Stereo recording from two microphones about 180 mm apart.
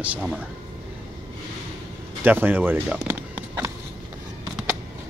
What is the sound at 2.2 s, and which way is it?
Speech, 10° right (ahead or behind).